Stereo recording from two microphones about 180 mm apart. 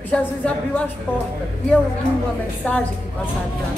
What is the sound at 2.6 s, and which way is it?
Speech, 10° left (ahead or behind).